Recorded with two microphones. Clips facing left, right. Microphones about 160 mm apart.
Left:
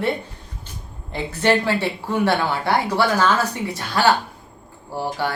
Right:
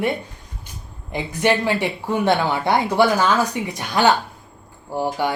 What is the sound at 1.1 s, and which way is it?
Speech, 15° right (ahead or behind).